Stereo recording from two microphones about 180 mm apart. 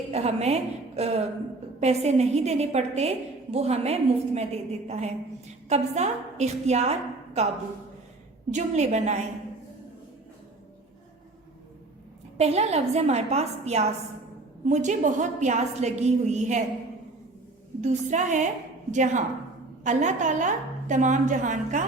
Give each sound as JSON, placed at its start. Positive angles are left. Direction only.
{"t": 0.1, "sound": "a woman's voice", "side_deg": -35}
{"t": 8.5, "sound": "a woman's voice", "side_deg": -40}
{"t": 12.4, "sound": "a woman's voice", "side_deg": -35}
{"t": 17.7, "sound": "a woman's voice", "side_deg": -40}